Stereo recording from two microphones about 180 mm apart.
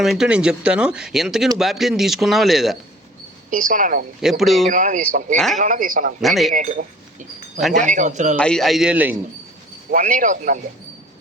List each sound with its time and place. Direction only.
0.0 s speech: centre (ahead or behind)
3.5 s speech: 50° right (ahead or behind)
4.2 s speech: centre (ahead or behind)
4.7 s speech: 45° right (ahead or behind)
6.2 s speech: centre (ahead or behind)
6.5 s a sound: 50° right (ahead or behind)
7.9 s speech: 40° right (ahead or behind)
8.4 s speech: 5° left (ahead or behind)
9.9 s speech: 50° right (ahead or behind)